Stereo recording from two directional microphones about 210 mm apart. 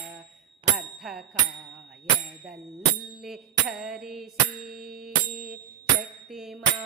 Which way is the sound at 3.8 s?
Centre (ahead or behind).